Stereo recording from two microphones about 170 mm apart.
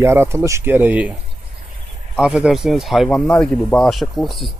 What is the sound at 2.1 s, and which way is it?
Speech, 5° right (ahead or behind).